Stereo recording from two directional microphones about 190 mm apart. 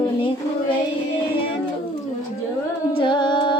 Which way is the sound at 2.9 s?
25° left (ahead or behind).